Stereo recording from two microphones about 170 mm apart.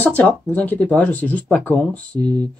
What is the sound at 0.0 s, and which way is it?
Speech, 10° left (ahead or behind).